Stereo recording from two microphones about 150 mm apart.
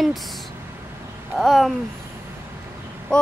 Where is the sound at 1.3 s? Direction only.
Centre (ahead or behind).